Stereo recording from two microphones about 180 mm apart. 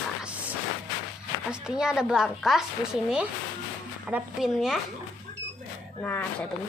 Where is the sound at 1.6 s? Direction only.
5° right (ahead or behind).